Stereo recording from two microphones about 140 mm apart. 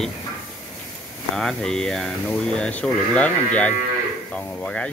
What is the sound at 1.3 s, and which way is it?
Speech, 5° left (ahead or behind).